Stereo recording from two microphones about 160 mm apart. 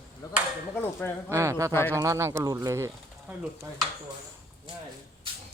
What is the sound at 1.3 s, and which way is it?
Speech, 20° right (ahead or behind).